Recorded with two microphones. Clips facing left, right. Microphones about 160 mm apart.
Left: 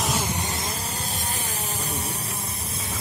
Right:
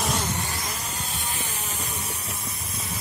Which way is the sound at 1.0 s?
40° left (ahead or behind).